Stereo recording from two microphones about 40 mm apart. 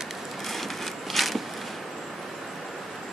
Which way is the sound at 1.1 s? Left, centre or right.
Centre.